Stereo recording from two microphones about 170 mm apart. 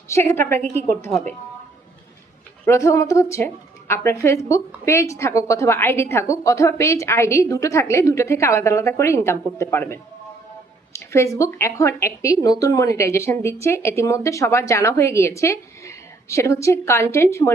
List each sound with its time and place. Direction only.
0.1 s a woman's voice: 15° left (ahead or behind)
2.6 s a woman's voice: 15° left (ahead or behind)